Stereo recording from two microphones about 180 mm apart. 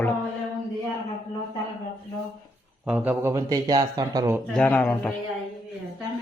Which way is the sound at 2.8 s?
10° right (ahead or behind).